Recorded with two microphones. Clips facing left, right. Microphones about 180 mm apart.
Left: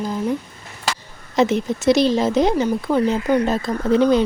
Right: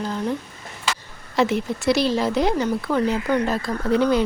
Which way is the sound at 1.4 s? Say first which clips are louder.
Left 3 dB; 20° left (ahead or behind).